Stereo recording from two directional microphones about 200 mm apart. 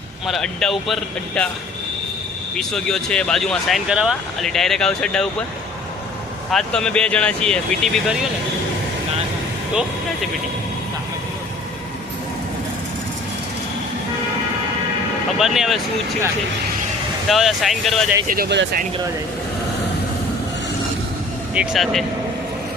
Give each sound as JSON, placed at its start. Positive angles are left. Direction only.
{"t": 0.3, "sound": "speech", "side_deg": 0}
{"t": 2.6, "sound": "speech", "side_deg": 5}
{"t": 6.5, "sound": "speech", "side_deg": 5}
{"t": 15.4, "sound": "speech", "side_deg": 0}
{"t": 17.2, "sound": "speech", "side_deg": 0}
{"t": 18.3, "sound": "speech", "side_deg": -50}
{"t": 21.5, "sound": "speech", "side_deg": -5}